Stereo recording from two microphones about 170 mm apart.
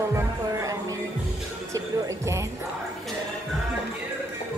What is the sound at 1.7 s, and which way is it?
Speech, 15° right (ahead or behind).